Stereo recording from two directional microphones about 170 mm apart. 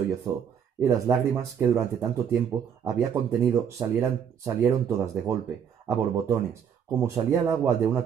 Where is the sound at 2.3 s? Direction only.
15° right (ahead or behind).